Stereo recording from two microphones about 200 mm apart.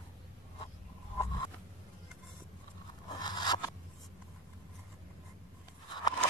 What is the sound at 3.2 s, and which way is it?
Scrape, 20° left (ahead or behind).